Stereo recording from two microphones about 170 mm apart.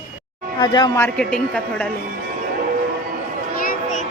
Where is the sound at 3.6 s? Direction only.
50° left (ahead or behind).